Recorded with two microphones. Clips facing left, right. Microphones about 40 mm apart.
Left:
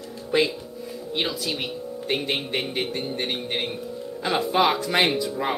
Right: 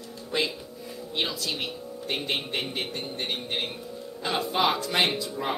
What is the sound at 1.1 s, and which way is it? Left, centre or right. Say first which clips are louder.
Speech: left 3 dB; centre.